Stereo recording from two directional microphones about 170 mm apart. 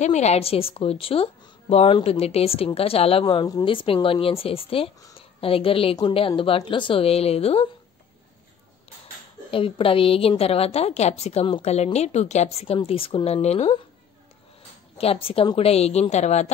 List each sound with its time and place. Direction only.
0.0 s a woman's voice: 40° left (ahead or behind)
9.5 s a woman's voice: 30° left (ahead or behind)
15.0 s a woman's voice: 35° left (ahead or behind)